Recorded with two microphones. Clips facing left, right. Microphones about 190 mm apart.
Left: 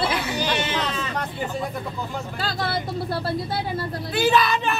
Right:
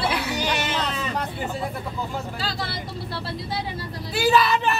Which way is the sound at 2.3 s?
50° left (ahead or behind).